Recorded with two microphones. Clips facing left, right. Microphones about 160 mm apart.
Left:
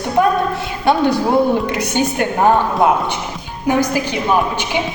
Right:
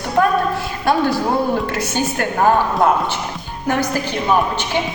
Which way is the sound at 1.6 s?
20° left (ahead or behind).